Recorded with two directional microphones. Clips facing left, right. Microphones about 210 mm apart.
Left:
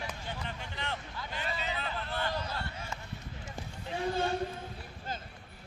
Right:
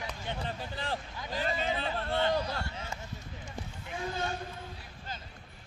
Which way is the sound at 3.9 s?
30° left (ahead or behind).